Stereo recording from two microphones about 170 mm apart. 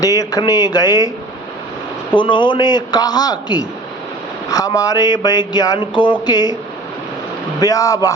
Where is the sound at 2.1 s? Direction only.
30° left (ahead or behind).